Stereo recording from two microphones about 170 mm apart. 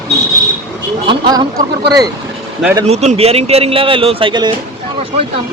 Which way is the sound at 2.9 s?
40° right (ahead or behind).